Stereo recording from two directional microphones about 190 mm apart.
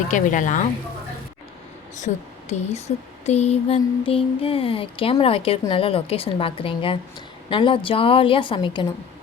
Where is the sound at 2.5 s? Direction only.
35° left (ahead or behind).